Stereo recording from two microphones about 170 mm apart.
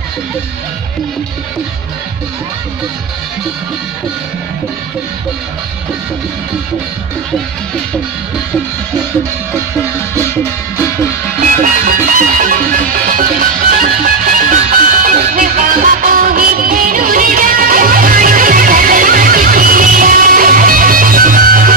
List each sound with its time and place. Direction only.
11.5 s music: 50° right (ahead or behind)